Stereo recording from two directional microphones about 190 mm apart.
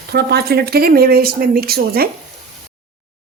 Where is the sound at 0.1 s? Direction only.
60° right (ahead or behind).